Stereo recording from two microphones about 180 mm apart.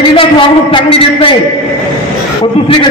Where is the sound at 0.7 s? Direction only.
30° left (ahead or behind).